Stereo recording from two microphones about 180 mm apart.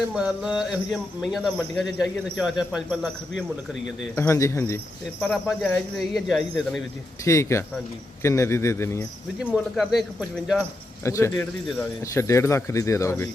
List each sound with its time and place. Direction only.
0.1 s speech: 5° right (ahead or behind)
4.1 s speech: 15° left (ahead or behind)
5.2 s speech: centre (ahead or behind)
7.3 s speech: 15° left (ahead or behind)
9.4 s speech: centre (ahead or behind)
11.0 s speech: 15° left (ahead or behind)